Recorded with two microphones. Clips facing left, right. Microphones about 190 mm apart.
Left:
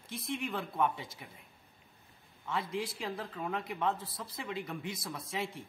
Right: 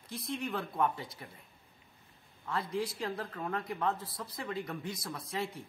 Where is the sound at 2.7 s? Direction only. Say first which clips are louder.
Right 2 dB; centre (ahead or behind).